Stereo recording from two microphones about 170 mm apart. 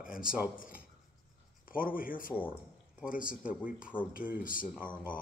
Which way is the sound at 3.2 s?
5° right (ahead or behind).